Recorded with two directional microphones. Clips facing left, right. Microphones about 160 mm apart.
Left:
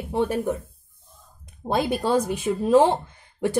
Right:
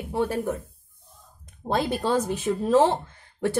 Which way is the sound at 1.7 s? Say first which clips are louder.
Left 2 dB; 10° left (ahead or behind).